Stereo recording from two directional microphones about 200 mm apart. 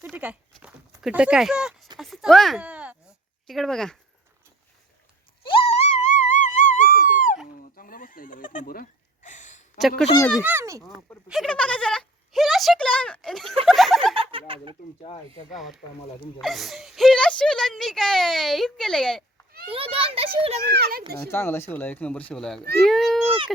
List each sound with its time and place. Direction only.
0.0 s speech: 5° right (ahead or behind)
0.6 s a sound: 5° right (ahead or behind)
3.4 s a woman's voice: centre (ahead or behind)
5.5 s a sound: 30° left (ahead or behind)
10.4 s speech: 10° right (ahead or behind)
11.3 s a woman's voice: centre (ahead or behind)
13.7 s chuckle: centre (ahead or behind)
14.2 s a sound: 25° right (ahead or behind)
15.5 s a woman's voice: centre (ahead or behind)
19.6 s a child's voice: 25° right (ahead or behind)
20.7 s a child's voice: 55° right (ahead or behind)
21.2 s a woman's voice: 10° left (ahead or behind)